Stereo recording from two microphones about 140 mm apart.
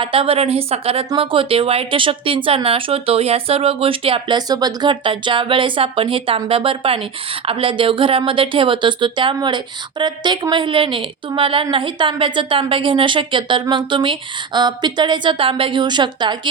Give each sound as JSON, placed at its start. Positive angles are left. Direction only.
{"t": 0.0, "sound": "a woman's voice", "side_deg": -40}